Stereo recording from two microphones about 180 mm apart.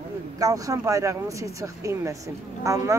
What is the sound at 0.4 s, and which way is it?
Speech, 20° right (ahead or behind).